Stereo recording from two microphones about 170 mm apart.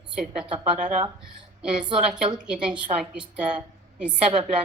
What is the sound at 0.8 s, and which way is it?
Speech, 50° right (ahead or behind).